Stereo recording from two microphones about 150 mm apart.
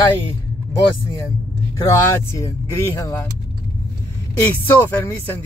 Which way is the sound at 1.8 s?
20° left (ahead or behind).